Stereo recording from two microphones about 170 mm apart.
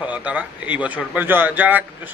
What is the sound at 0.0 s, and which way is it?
A man's voice, 10° right (ahead or behind).